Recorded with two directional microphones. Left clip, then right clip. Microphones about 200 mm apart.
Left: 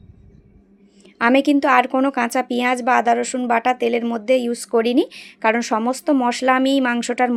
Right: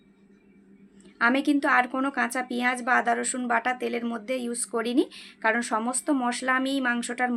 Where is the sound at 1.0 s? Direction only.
35° left (ahead or behind).